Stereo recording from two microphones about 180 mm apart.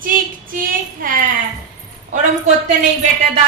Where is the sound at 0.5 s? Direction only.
50° right (ahead or behind).